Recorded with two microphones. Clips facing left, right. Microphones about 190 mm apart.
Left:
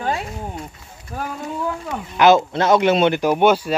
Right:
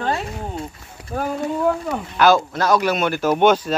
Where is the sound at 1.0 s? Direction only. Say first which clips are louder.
Right 4 dB; 65° right (ahead or behind).